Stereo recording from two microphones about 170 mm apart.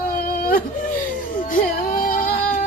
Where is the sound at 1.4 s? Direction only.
55° left (ahead or behind).